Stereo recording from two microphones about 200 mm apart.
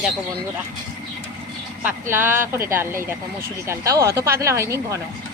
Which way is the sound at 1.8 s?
10° right (ahead or behind).